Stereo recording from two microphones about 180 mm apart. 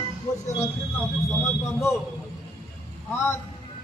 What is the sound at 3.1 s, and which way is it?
Speech, 15° left (ahead or behind).